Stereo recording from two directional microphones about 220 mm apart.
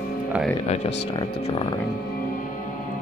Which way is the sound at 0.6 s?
25° left (ahead or behind).